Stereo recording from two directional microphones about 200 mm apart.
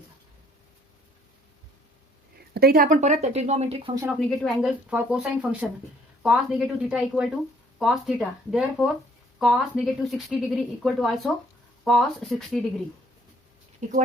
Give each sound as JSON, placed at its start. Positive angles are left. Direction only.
{"t": 2.5, "sound": "speech", "side_deg": -50}
{"t": 4.4, "sound": "speech", "side_deg": -5}
{"t": 13.8, "sound": "speech", "side_deg": -40}